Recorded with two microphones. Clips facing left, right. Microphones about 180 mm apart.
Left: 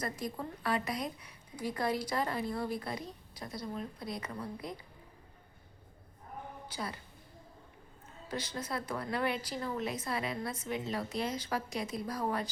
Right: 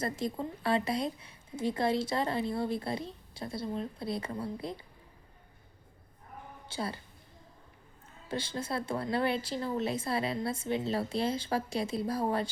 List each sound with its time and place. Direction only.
0.0 s a woman's voice: 25° right (ahead or behind)
6.7 s a woman's voice: 30° right (ahead or behind)
8.3 s a woman's voice: 30° right (ahead or behind)